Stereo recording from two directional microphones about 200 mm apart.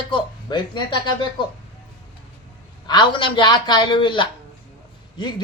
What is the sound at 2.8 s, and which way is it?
Speech, 25° left (ahead or behind).